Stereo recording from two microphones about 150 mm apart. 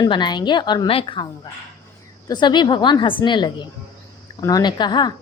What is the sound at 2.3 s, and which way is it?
A woman's voice, 30° left (ahead or behind).